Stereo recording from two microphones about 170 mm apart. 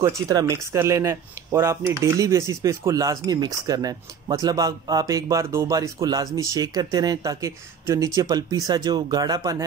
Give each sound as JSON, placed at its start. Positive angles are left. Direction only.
{"t": 0.0, "sound": "speech", "side_deg": -20}